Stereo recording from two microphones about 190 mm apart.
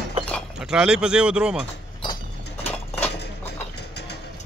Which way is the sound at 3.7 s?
60° left (ahead or behind).